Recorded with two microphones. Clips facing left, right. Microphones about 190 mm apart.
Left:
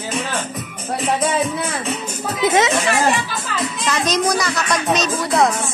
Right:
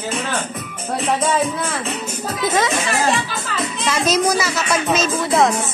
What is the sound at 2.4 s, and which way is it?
Speech, 20° left (ahead or behind).